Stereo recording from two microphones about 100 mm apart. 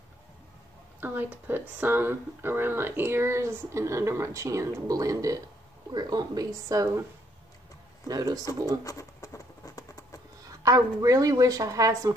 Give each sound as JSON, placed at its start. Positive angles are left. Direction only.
{"t": 1.0, "sound": "a woman's voice", "side_deg": -20}
{"t": 8.1, "sound": "a woman's voice", "side_deg": -40}
{"t": 8.8, "sound": "patter", "side_deg": 35}
{"t": 10.6, "sound": "a woman's voice", "side_deg": -35}